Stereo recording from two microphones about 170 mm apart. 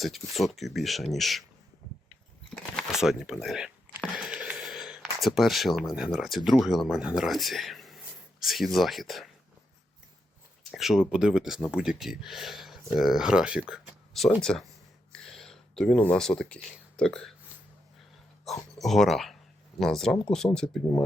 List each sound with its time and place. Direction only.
0.0 s speech: centre (ahead or behind)
2.7 s a sound: centre (ahead or behind)
6.6 s speech: centre (ahead or behind)
10.6 s speech: centre (ahead or behind)
15.1 s a sound: 5° left (ahead or behind)
17.0 s speech: 5° left (ahead or behind)
18.5 s speech: centre (ahead or behind)